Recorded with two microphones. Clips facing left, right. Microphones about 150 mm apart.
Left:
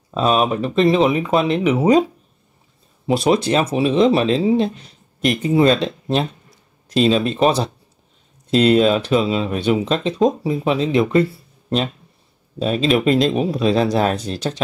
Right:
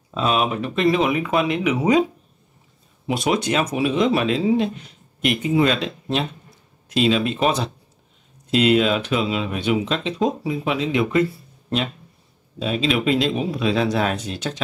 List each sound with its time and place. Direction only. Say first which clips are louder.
0.1 s speech: left 4 dB; 35° left (ahead or behind)
3.1 s speech: left 5 dB; 35° left (ahead or behind)
12.5 s speech: left 4 dB; 40° left (ahead or behind)